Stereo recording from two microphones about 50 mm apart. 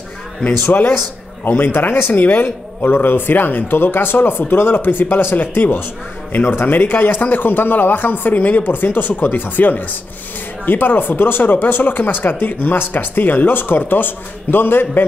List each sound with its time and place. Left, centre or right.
1.6 s speech: left